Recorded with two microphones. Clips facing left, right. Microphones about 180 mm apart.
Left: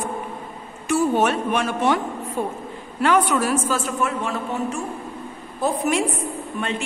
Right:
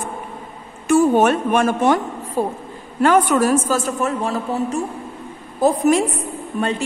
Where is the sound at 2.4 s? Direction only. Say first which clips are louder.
Right 6 dB; 35° right (ahead or behind).